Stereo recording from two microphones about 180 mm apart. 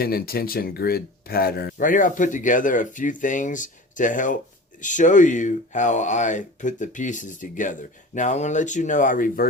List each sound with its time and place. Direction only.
0.0 s speech: 55° left (ahead or behind)